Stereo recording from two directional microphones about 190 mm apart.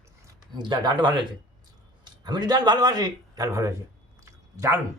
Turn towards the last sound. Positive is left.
turn(degrees=-15)  # may be behind; listen again after turning